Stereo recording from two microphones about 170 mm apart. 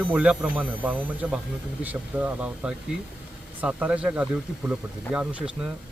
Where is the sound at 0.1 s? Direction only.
10° right (ahead or behind).